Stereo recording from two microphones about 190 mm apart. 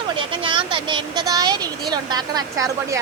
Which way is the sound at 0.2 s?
25° right (ahead or behind).